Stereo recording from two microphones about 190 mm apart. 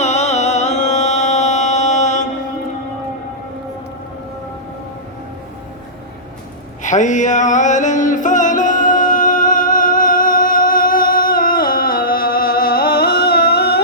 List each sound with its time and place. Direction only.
0.0 s music: 35° left (ahead or behind)
6.8 s music: 40° left (ahead or behind); by 13.8 s 55° left (ahead or behind)